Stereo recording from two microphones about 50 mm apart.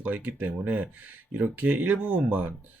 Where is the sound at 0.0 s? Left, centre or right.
Right.